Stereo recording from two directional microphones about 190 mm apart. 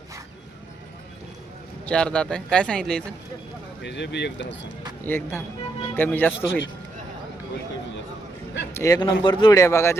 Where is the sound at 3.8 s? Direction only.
65° left (ahead or behind).